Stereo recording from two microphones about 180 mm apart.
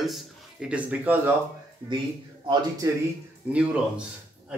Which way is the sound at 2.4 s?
20° right (ahead or behind).